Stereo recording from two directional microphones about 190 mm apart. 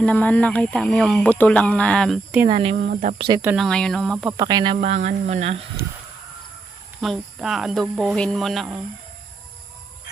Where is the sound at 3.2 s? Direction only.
20° right (ahead or behind).